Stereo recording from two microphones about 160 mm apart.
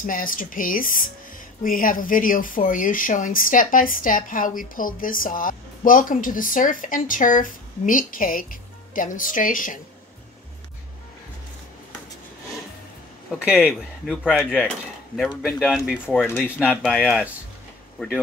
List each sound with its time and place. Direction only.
0.0 s speech: 60° left (ahead or behind)
14.0 s speech: centre (ahead or behind)
14.4 s speech: 10° left (ahead or behind)
16.3 s speech: 15° left (ahead or behind)
16.5 s speech: 5° right (ahead or behind)
16.8 s speech: 5° left (ahead or behind)